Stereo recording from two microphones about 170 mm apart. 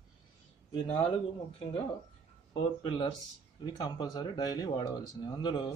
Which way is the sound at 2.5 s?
25° left (ahead or behind).